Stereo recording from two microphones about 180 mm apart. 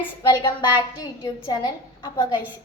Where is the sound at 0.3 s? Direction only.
25° left (ahead or behind).